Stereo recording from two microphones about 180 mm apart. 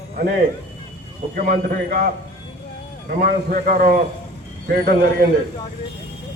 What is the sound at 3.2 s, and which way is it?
A man's voice, 55° right (ahead or behind).